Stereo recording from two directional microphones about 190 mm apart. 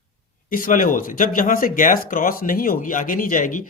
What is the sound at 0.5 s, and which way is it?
Speech, 45° left (ahead or behind).